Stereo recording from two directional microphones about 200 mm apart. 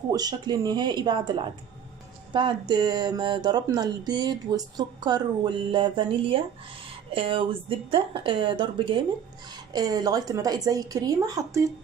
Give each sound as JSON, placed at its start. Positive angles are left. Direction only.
{"t": 0.1, "sound": "speech", "side_deg": -20}